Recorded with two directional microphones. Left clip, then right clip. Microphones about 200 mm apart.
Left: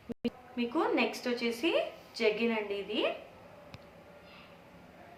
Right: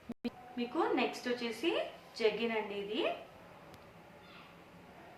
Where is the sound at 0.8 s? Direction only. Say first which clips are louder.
Left 3 dB; 30° left (ahead or behind).